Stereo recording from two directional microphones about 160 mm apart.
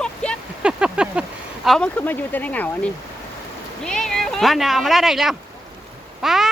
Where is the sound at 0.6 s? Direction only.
5° right (ahead or behind).